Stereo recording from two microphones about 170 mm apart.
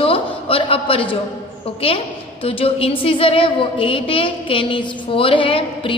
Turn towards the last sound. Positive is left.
turn(degrees=30)  # may be behind; listen again after turning